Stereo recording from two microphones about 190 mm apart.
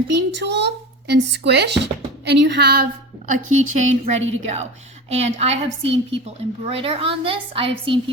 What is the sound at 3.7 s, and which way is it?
A woman's voice, 40° right (ahead or behind).